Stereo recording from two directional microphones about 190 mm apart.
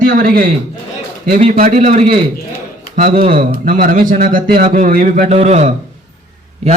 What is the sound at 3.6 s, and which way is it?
A man's voice, 45° right (ahead or behind).